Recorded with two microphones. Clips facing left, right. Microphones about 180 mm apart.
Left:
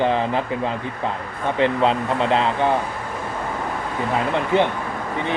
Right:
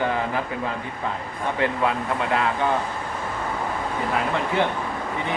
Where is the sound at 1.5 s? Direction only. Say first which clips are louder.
Left 5 dB; 25° left (ahead or behind).